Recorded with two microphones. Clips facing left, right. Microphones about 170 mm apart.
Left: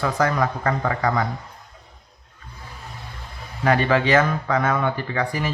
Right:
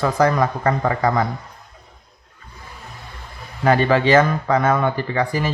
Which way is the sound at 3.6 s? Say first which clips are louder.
Right 3 dB; 35° right (ahead or behind).